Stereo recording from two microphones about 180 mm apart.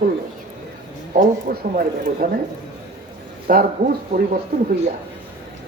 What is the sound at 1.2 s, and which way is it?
Speech, 45° right (ahead or behind).